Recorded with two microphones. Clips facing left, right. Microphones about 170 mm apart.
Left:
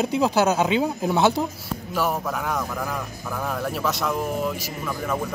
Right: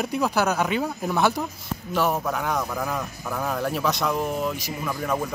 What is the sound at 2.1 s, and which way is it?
Speech, centre (ahead or behind).